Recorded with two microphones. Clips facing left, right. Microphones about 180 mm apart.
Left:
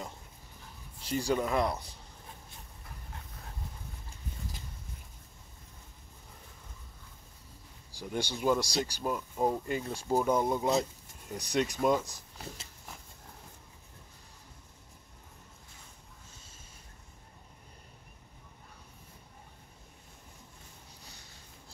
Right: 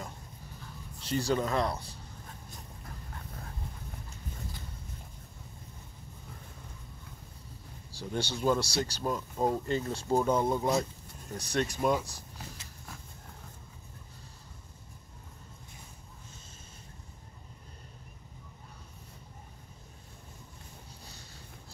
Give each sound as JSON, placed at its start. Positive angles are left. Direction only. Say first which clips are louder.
{"t": 1.0, "sound": "speech", "louder": "right 1 dB", "side_deg": 10}
{"t": 7.9, "sound": "speech", "louder": "right 1 dB", "side_deg": 15}
{"t": 12.1, "sound": "a sound", "louder": "left 1 dB", "side_deg": 20}